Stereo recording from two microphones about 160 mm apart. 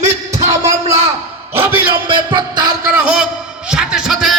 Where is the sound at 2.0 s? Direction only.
30° right (ahead or behind).